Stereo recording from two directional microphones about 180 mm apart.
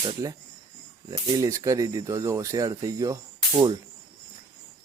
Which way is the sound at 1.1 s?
20° right (ahead or behind).